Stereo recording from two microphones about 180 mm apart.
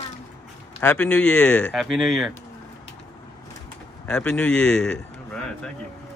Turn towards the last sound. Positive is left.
turn(degrees=5)  # may be behind; listen again after turning